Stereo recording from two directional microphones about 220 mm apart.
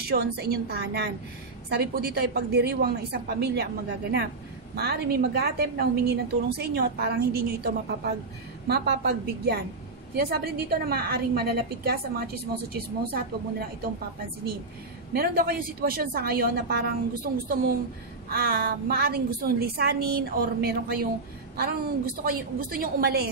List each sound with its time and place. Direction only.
0.0 s a woman's voice: 45° right (ahead or behind)
4.7 s a woman's voice: 45° right (ahead or behind)
15.1 s a woman's voice: 45° right (ahead or behind)